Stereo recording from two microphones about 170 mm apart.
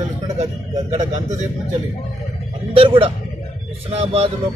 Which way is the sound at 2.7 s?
35° right (ahead or behind).